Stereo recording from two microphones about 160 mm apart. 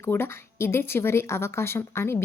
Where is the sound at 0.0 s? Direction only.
15° left (ahead or behind).